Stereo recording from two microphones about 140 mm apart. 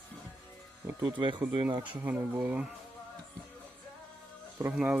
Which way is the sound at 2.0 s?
10° right (ahead or behind).